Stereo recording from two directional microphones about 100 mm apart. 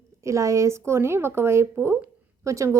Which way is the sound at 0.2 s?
30° right (ahead or behind).